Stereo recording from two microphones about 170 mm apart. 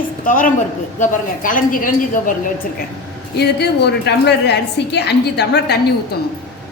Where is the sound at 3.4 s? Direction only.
75° left (ahead or behind).